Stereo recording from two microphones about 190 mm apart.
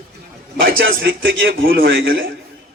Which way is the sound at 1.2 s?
75° right (ahead or behind).